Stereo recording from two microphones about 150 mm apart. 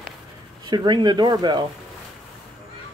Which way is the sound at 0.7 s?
30° right (ahead or behind).